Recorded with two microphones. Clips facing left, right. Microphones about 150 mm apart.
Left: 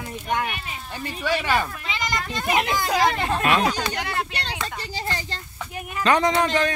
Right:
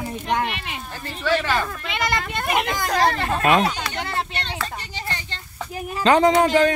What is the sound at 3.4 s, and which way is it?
Speech, 30° right (ahead or behind).